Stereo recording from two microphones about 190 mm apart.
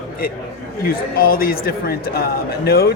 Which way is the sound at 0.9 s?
50° left (ahead or behind).